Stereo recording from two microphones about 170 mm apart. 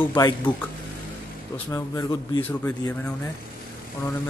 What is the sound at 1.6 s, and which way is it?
Speech, 20° left (ahead or behind).